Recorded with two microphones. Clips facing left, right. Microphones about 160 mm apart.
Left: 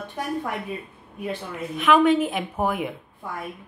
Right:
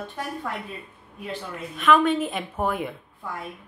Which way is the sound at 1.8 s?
15° left (ahead or behind).